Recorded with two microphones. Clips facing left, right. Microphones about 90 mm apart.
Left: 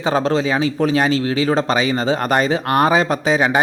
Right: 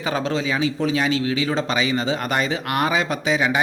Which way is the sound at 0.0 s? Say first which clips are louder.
Left 6 dB; 40° left (ahead or behind).